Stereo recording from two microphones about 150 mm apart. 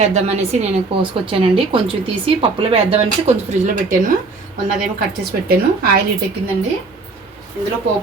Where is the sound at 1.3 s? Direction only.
35° right (ahead or behind).